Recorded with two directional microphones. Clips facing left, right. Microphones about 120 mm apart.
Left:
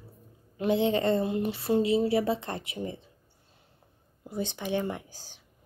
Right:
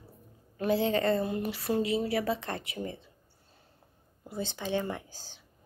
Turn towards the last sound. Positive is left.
turn(degrees=15)  # may be behind; listen again after turning